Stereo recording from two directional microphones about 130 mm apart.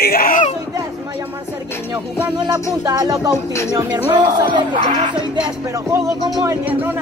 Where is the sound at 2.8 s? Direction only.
30° right (ahead or behind).